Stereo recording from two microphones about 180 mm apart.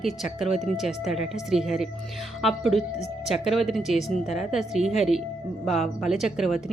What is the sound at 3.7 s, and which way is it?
A woman's voice, centre (ahead or behind).